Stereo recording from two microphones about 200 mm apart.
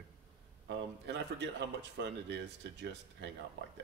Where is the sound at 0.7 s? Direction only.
60° right (ahead or behind).